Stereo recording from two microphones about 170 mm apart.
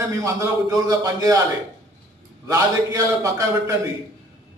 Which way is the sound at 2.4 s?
20° right (ahead or behind).